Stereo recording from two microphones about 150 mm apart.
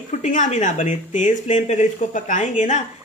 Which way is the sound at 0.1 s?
55° left (ahead or behind).